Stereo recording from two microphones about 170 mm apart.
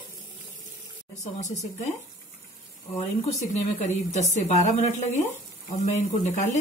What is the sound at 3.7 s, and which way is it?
A woman's voice, 45° left (ahead or behind).